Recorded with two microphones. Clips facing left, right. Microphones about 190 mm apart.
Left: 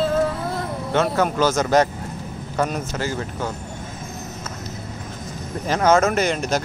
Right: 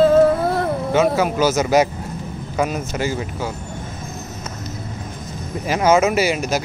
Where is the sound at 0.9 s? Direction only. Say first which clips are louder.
Right 2 dB; 5° right (ahead or behind).